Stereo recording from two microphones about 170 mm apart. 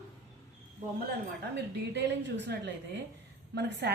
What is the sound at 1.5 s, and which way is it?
A woman's voice, 90° right.